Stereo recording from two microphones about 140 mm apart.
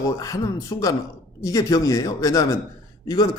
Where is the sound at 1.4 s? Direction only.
25° left (ahead or behind).